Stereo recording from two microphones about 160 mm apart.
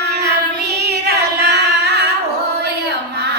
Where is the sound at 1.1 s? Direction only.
90° right.